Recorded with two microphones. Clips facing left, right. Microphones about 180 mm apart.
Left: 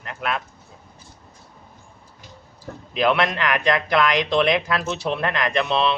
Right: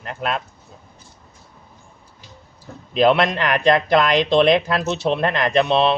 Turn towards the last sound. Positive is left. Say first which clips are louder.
# right 4 dB
turn(degrees=-35)  # may be behind; listen again after turning